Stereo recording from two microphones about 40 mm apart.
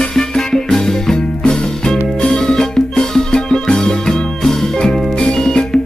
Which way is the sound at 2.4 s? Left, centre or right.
Centre.